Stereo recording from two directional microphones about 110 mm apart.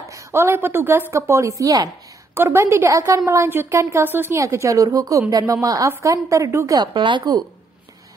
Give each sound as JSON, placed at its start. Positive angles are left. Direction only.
{"t": 0.1, "sound": "a woman's voice", "side_deg": -25}
{"t": 6.9, "sound": "a woman's voice", "side_deg": -45}